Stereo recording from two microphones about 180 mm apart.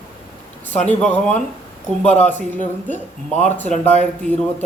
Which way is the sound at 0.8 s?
5° left (ahead or behind).